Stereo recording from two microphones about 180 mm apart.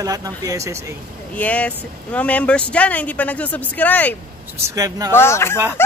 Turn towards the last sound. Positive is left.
turn(degrees=15)  # may be behind; listen again after turning